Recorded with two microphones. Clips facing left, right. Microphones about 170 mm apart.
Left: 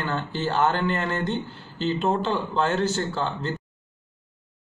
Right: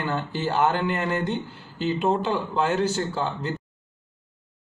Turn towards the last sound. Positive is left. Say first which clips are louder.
# even
turn(degrees=-10)  # may be behind; listen again after turning